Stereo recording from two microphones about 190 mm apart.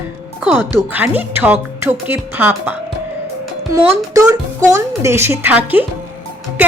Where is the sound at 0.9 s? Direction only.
10° right (ahead or behind).